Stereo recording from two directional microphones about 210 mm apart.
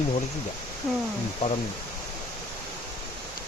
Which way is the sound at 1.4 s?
30° left (ahead or behind).